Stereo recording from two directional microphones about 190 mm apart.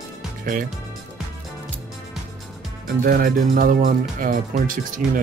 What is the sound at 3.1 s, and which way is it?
Speech, 50° right (ahead or behind).